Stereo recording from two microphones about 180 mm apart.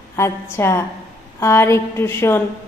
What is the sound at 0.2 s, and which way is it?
A woman's voice, 15° left (ahead or behind).